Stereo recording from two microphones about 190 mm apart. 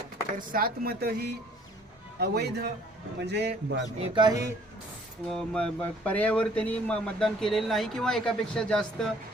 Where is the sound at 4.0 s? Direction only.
25° right (ahead or behind).